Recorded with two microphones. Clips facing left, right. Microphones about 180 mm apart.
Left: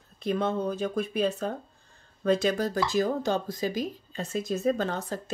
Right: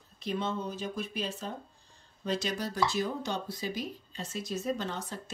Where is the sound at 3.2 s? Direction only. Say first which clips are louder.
Left 7 dB; 90° left.